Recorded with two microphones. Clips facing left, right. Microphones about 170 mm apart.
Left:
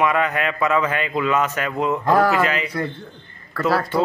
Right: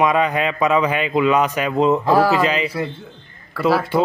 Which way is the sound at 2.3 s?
20° right (ahead or behind).